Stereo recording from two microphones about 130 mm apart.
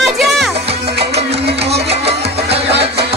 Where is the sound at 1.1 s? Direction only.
50° right (ahead or behind).